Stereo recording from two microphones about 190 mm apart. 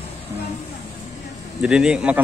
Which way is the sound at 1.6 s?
5° right (ahead or behind).